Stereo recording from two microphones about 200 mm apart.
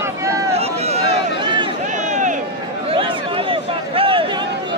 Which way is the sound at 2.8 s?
25° right (ahead or behind).